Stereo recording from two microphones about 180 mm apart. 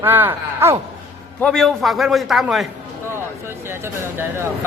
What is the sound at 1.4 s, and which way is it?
A man's voice, centre (ahead or behind).